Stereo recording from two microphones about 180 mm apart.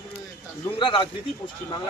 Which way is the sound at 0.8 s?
25° left (ahead or behind).